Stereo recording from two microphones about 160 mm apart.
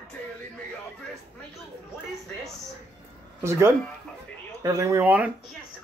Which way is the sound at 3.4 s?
15° right (ahead or behind).